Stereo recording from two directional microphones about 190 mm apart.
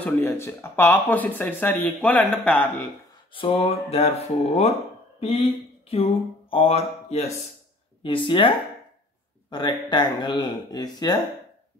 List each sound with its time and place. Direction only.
0.0 s speech: 10° left (ahead or behind)
3.3 s speech: 30° left (ahead or behind)